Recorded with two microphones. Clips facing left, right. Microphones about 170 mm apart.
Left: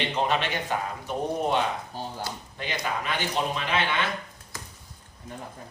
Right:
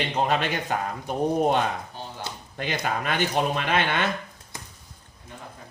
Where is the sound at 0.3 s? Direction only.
45° right (ahead or behind).